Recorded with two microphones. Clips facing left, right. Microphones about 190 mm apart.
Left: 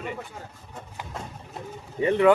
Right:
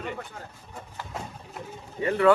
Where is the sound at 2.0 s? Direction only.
20° left (ahead or behind).